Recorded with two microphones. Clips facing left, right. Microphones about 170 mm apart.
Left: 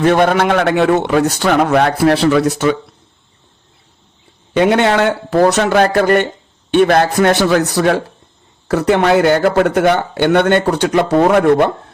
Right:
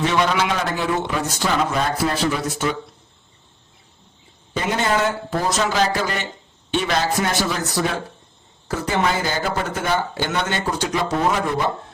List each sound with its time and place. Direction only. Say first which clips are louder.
0.0 s a man's voice: left 8 dB; 55° left (ahead or behind); by 2.7 s 70° left (ahead or behind)
4.5 s a man's voice: left 9 dB; 70° left (ahead or behind)